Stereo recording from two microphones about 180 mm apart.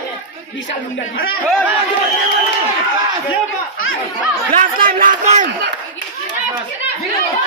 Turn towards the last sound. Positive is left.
turn(degrees=-45)  # may be behind; listen again after turning